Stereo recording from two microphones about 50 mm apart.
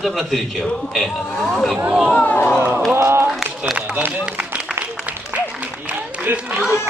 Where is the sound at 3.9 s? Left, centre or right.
Right.